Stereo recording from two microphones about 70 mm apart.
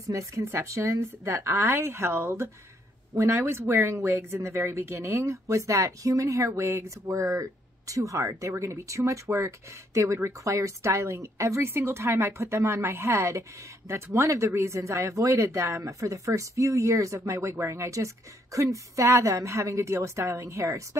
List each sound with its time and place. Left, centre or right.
0.1 s a woman's voice: right